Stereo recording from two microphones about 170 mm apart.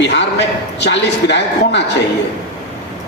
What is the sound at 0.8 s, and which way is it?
A man's voice, 90° left.